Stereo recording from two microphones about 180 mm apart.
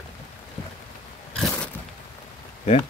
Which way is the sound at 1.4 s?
5° left (ahead or behind).